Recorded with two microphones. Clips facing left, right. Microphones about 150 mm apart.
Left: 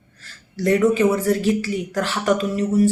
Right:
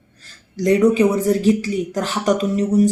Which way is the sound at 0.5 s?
15° right (ahead or behind).